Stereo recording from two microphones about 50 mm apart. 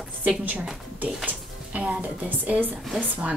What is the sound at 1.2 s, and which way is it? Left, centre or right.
Speech, right.